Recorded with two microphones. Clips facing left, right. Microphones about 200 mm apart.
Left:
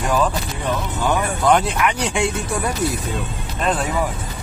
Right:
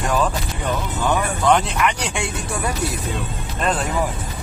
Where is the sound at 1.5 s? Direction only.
5° left (ahead or behind).